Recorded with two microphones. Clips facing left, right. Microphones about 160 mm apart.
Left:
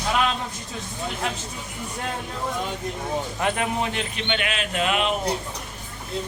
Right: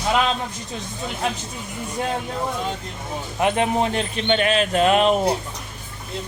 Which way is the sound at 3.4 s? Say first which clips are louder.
Right 8 dB; 20° right (ahead or behind).